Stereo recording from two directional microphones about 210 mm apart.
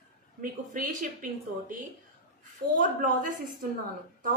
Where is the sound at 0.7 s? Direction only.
40° right (ahead or behind).